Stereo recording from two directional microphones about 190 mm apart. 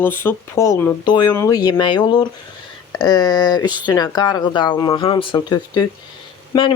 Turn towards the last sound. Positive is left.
turn(degrees=25)  # may be behind; listen again after turning